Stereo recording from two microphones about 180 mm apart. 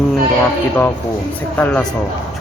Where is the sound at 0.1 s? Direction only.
10° left (ahead or behind).